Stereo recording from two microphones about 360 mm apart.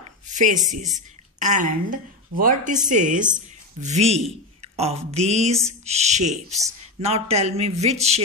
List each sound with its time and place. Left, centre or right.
0.0 s a woman's voice: right